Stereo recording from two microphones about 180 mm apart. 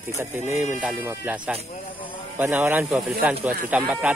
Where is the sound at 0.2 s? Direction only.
15° right (ahead or behind).